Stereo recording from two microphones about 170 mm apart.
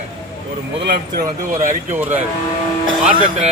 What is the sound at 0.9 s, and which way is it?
Speech, 60° right (ahead or behind).